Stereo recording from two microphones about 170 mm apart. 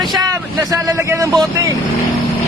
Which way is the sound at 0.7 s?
15° right (ahead or behind).